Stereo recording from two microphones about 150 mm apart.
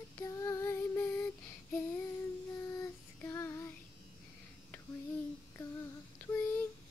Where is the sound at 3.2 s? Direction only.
15° left (ahead or behind).